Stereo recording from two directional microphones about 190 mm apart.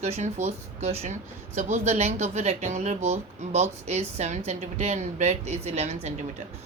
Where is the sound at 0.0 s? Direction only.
35° right (ahead or behind).